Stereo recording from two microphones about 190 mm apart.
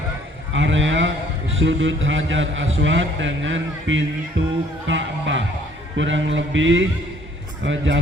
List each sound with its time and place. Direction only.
0.5 s a man's voice: 80° right